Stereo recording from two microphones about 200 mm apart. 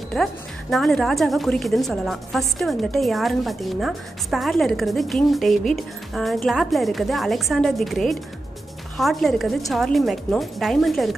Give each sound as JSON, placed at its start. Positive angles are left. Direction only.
{"t": 0.1, "sound": "a woman's voice", "side_deg": 0}